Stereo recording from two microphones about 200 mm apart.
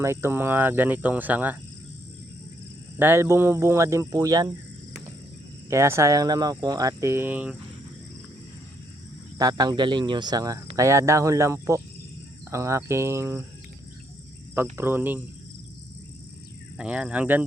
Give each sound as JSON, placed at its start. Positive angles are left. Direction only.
{"t": 0.0, "sound": "speech", "side_deg": -15}
{"t": 3.0, "sound": "speech", "side_deg": -10}
{"t": 5.7, "sound": "speech", "side_deg": -15}
{"t": 9.4, "sound": "speech", "side_deg": -20}
{"t": 14.5, "sound": "speech", "side_deg": -10}
{"t": 16.7, "sound": "speech", "side_deg": -5}